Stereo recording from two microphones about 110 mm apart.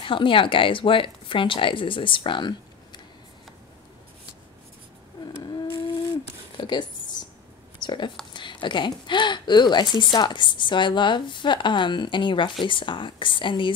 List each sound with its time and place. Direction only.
0.0 s speech: 50° left (ahead or behind)
6.5 s a sound: 45° left (ahead or behind)
7.8 s speech: 45° left (ahead or behind)